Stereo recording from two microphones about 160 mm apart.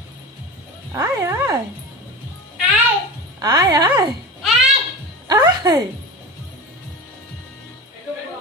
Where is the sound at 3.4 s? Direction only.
25° right (ahead or behind).